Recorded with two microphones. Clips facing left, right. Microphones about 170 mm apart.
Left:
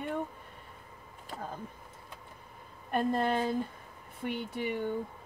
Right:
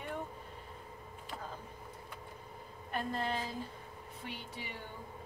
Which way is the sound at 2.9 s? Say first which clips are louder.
Left 8 dB; 55° left (ahead or behind).